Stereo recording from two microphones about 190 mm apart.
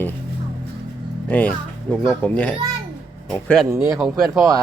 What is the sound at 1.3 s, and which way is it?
A child's voice, 10° left (ahead or behind).